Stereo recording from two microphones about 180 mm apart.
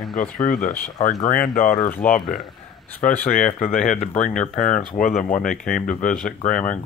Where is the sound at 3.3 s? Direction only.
45° left (ahead or behind).